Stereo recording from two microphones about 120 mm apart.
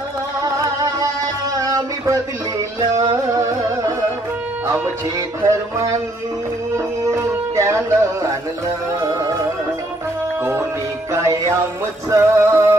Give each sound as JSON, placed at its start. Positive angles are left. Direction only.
{"t": 0.4, "sound": "music", "side_deg": -25}
{"t": 4.6, "sound": "speech", "side_deg": -20}
{"t": 5.5, "sound": "music", "side_deg": -25}
{"t": 7.1, "sound": "music", "side_deg": -25}
{"t": 11.1, "sound": "music", "side_deg": -25}